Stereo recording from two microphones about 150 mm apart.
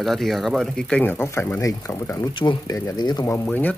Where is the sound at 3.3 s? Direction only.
15° left (ahead or behind).